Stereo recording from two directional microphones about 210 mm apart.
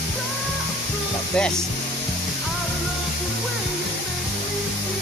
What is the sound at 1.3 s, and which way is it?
Speech, 5° left (ahead or behind).